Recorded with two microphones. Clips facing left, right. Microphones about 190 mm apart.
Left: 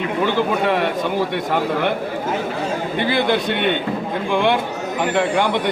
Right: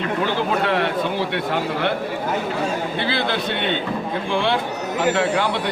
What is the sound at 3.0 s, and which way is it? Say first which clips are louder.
Speech: left 7 dB; 15° left (ahead or behind).